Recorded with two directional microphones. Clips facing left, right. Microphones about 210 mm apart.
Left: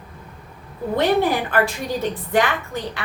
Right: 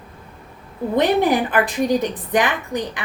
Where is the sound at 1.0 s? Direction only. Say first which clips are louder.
Right 2 dB; 15° right (ahead or behind).